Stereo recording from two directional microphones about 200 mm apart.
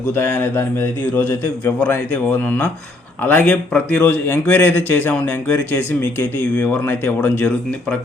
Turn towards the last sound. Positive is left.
turn(degrees=5)  # may be behind; listen again after turning